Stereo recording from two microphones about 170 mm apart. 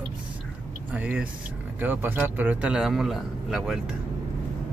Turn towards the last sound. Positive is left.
turn(degrees=0)  # may be behind; listen again after turning